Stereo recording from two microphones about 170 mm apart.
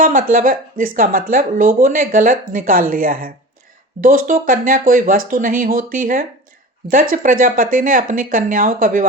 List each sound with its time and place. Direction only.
0.0 s speech: 55° right (ahead or behind)